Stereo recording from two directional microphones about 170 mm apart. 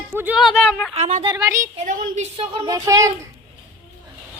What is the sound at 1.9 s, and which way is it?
Speech, 50° right (ahead or behind).